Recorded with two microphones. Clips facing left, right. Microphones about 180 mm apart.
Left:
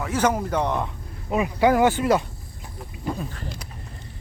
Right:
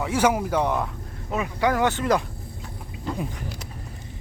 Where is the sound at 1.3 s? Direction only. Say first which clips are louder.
Left 4 dB; 10° left (ahead or behind).